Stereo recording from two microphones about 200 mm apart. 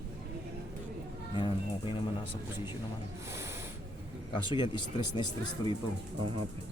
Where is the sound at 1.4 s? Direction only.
25° left (ahead or behind).